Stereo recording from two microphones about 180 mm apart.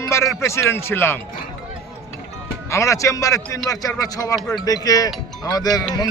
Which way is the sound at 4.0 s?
20° left (ahead or behind).